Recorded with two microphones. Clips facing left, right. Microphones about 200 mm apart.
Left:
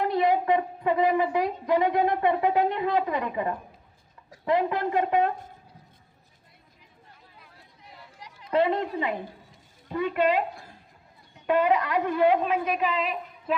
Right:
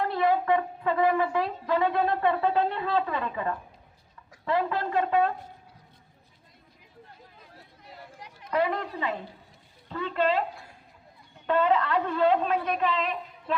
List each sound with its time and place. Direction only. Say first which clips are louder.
0.0 s a woman's voice: left 2 dB; 15° left (ahead or behind)
8.4 s a woman's voice: left 3 dB; 25° left (ahead or behind)
11.4 s a woman's voice: left 1 dB; 10° left (ahead or behind)